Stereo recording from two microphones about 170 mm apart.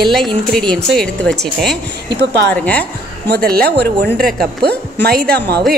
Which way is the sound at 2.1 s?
80° right.